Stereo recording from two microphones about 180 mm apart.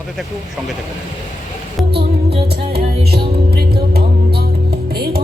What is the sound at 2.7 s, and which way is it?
Music, 60° right (ahead or behind).